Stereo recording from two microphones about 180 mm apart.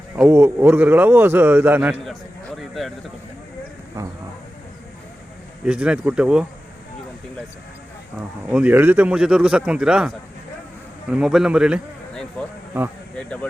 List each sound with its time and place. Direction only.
0.2 s a man's voice: 10° right (ahead or behind)
2.6 s speech: centre (ahead or behind)
5.6 s speech: 5° right (ahead or behind)
8.4 s a man's voice: 10° right (ahead or behind)
12.7 s a man's voice: 10° right (ahead or behind)
13.1 s speech: 5° left (ahead or behind)